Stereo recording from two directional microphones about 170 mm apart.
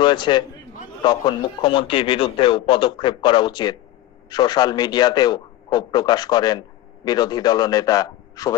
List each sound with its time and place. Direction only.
0.0 s a man's voice: 25° left (ahead or behind)